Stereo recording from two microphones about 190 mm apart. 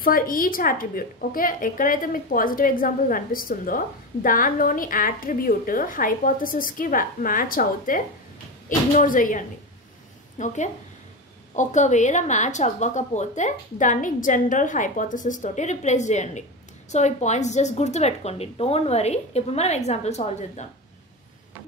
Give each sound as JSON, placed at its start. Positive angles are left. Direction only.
{"t": 0.0, "sound": "a woman's voice", "side_deg": 50}